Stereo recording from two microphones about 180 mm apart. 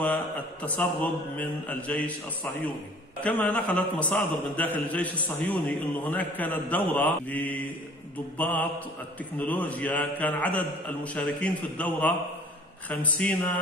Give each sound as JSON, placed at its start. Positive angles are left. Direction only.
{"t": 0.0, "sound": "a man's voice", "side_deg": 10}
{"t": 3.2, "sound": "a man's voice", "side_deg": 10}